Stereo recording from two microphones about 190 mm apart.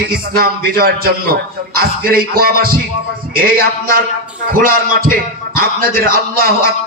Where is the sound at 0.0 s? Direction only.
55° right (ahead or behind).